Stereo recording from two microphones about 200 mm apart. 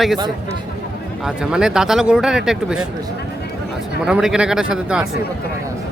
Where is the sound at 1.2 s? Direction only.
5° right (ahead or behind).